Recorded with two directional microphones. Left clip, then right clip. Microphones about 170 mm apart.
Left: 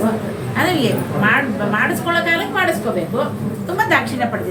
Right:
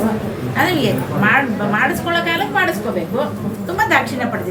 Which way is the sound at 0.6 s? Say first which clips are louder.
Right 1 dB; 10° right (ahead or behind).